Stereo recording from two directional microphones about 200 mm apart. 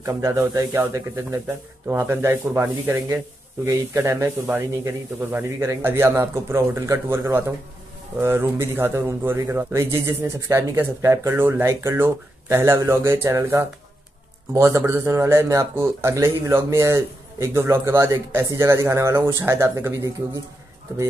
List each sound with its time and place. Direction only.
0.0 s speech: 15° right (ahead or behind)